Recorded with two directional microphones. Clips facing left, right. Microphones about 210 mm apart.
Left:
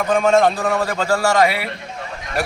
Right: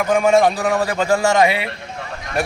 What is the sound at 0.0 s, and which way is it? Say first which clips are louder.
A man's voice: right 1 dB; 10° right (ahead or behind).